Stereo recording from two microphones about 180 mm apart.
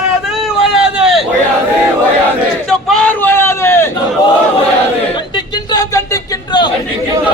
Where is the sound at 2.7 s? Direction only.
Centre (ahead or behind).